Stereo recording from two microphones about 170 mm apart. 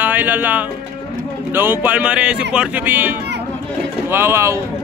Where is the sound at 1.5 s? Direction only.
10° right (ahead or behind).